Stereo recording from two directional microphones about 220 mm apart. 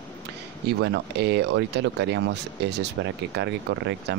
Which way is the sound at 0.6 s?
50° right (ahead or behind).